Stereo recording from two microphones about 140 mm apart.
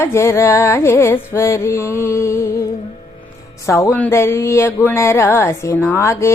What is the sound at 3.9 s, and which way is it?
Speech, 15° left (ahead or behind).